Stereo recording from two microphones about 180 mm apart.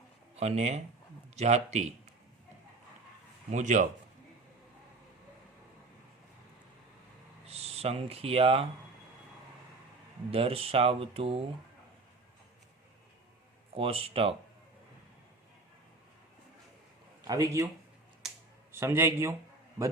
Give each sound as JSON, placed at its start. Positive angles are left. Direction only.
{"t": 0.3, "sound": "speech", "side_deg": -35}
{"t": 3.5, "sound": "a man's voice", "side_deg": -45}
{"t": 7.4, "sound": "speech", "side_deg": -35}
{"t": 10.3, "sound": "speech", "side_deg": -30}
{"t": 13.7, "sound": "speech", "side_deg": -30}
{"t": 17.2, "sound": "a man's voice", "side_deg": -20}
{"t": 18.7, "sound": "a man's voice", "side_deg": -15}